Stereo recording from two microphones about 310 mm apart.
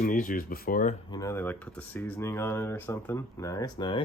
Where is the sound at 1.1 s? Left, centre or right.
Centre.